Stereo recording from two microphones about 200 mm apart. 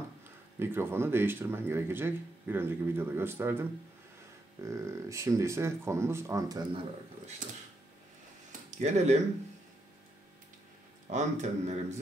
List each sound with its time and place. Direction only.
0.6 s speech: 10° right (ahead or behind)
4.6 s speech: 15° right (ahead or behind)
8.5 s a sound: 35° right (ahead or behind)
11.1 s speech: 35° right (ahead or behind)